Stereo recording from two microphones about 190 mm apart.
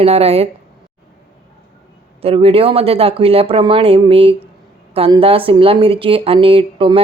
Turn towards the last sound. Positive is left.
turn(degrees=-25)  # may be behind; listen again after turning